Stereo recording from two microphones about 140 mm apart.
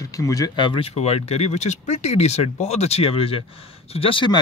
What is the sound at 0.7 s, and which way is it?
Speech, 45° left (ahead or behind).